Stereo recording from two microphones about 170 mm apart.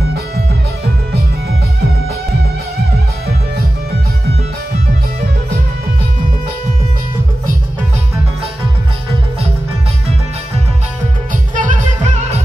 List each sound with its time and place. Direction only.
11.5 s music: 50° right (ahead or behind)